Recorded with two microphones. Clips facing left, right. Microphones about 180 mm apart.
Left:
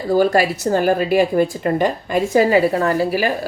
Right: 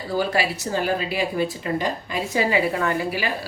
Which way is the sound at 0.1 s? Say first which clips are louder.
Left 8 dB; 45° left (ahead or behind).